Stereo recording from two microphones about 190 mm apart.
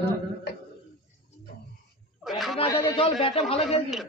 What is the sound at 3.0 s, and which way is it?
Speech, 30° left (ahead or behind).